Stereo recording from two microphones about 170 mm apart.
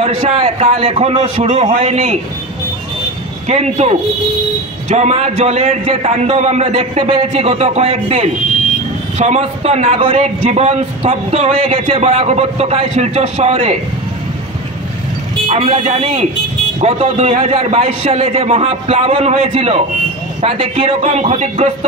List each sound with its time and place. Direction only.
0.0 s a man's voice: 40° right (ahead or behind)
3.4 s a man's voice: 40° right (ahead or behind)
15.4 s a man's voice: 35° right (ahead or behind)